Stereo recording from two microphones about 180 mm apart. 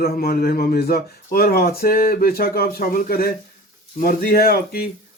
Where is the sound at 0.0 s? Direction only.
55° left (ahead or behind).